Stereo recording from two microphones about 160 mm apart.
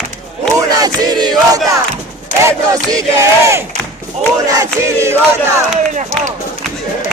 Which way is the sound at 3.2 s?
20° right (ahead or behind).